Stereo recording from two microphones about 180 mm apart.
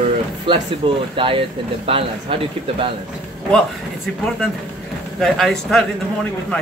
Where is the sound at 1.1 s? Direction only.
30° right (ahead or behind).